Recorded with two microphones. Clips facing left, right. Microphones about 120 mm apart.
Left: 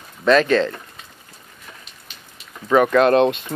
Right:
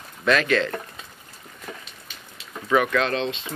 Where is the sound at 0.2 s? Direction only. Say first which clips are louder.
Left 5 dB; 35° left (ahead or behind).